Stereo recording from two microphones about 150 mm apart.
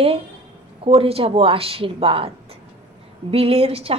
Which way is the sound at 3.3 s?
40° right (ahead or behind).